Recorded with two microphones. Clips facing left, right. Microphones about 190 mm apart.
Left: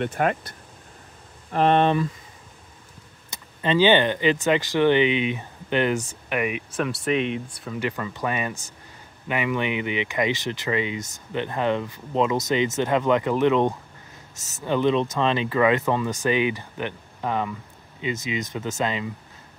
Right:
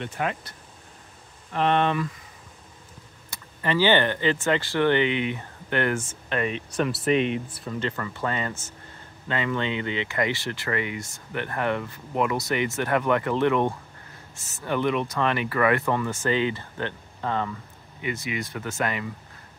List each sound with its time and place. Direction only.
0.0 s speech: 50° left (ahead or behind)
1.5 s speech: 40° left (ahead or behind)
3.3 s speech: 20° left (ahead or behind)
6.8 s speech: centre (ahead or behind); by 13.7 s 15° left (ahead or behind)
14.3 s speech: 40° left (ahead or behind)
14.6 s speech: 20° left (ahead or behind)